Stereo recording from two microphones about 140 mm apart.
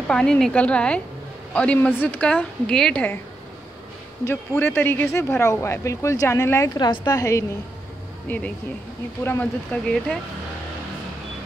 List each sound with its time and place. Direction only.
0.1 s a woman's voice: 5° left (ahead or behind)
4.2 s speech: 15° left (ahead or behind)
8.3 s a woman's voice: 10° left (ahead or behind)